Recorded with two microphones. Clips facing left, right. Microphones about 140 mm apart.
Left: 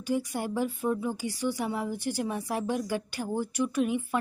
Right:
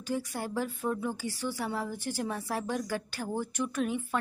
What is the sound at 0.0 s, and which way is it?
Speech, 10° left (ahead or behind).